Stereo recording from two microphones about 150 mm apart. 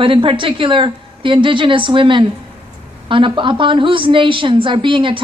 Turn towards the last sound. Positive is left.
turn(degrees=-35)  # may be behind; listen again after turning